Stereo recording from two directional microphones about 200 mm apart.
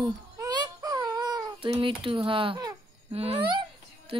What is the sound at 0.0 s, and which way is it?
Baby cry, 20° right (ahead or behind).